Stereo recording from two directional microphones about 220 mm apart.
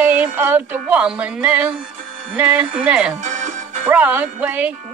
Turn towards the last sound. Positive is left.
turn(degrees=-5)  # may be behind; listen again after turning